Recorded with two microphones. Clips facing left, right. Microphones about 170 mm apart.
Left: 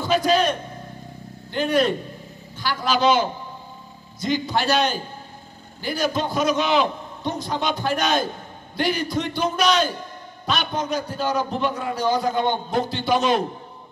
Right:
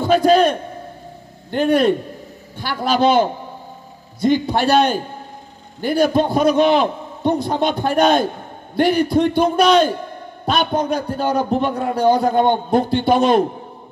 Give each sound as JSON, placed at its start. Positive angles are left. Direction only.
{"t": 0.0, "sound": "a man's voice", "side_deg": -55}